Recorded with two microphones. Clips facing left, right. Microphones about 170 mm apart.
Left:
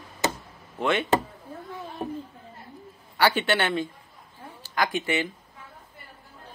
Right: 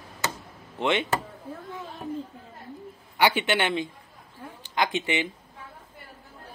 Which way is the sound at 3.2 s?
15° right (ahead or behind).